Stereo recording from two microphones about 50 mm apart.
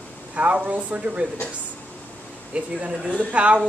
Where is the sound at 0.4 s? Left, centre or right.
Right.